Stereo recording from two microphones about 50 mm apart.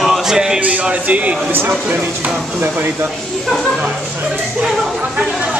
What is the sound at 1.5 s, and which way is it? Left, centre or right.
Speech, right.